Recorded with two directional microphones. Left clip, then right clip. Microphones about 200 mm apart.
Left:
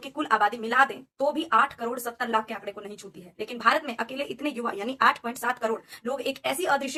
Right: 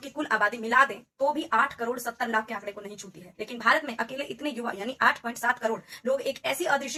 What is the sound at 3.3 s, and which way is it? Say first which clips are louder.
Speech: left 1 dB; 25° left (ahead or behind).